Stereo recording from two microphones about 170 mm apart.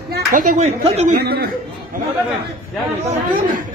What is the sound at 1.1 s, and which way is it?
Speech, 65° right (ahead or behind).